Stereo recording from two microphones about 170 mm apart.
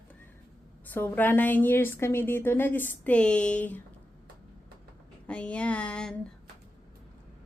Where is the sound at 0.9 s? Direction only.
10° left (ahead or behind).